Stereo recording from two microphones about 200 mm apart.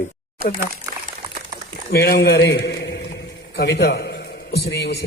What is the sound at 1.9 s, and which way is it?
A man's voice, 55° left (ahead or behind).